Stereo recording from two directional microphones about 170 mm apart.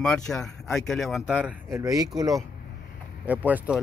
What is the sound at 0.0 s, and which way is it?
A man's voice, 5° left (ahead or behind).